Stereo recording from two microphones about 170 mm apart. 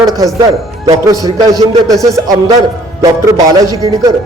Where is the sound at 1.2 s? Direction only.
20° right (ahead or behind).